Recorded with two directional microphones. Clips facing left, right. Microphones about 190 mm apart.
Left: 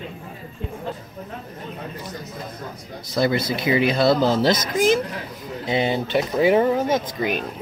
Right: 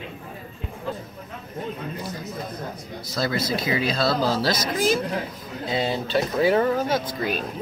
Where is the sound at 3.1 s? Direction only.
20° left (ahead or behind).